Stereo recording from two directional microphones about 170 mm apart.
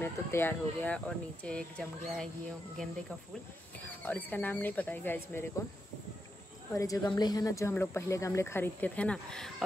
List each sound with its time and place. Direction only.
0.0 s speech: 15° left (ahead or behind)
3.8 s speech: 10° left (ahead or behind)
6.7 s a woman's voice: 20° left (ahead or behind)